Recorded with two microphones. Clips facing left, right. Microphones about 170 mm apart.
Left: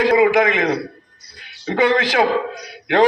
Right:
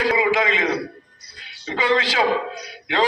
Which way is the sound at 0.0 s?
55° left (ahead or behind).